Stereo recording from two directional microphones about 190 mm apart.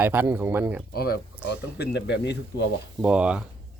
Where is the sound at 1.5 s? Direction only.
60° left (ahead or behind).